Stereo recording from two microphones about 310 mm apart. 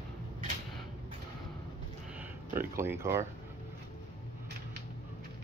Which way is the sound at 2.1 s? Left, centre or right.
Centre.